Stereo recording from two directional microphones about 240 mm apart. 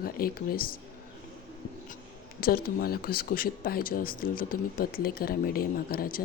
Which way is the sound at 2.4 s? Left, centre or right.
Left.